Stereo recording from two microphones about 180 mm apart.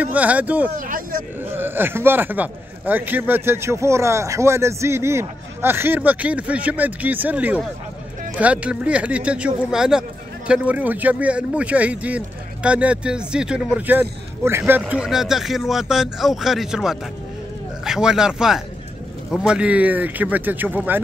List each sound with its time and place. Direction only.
0.0 s speech: 10° right (ahead or behind)
0.7 s speech: 50° right (ahead or behind)
1.4 s a man's voice: 10° right (ahead or behind)